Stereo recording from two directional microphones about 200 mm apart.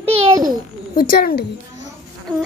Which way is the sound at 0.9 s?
45° left (ahead or behind).